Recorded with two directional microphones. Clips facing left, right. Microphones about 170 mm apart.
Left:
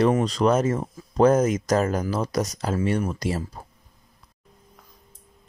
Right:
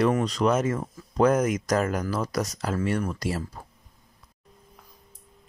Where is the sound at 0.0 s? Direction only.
30° left (ahead or behind).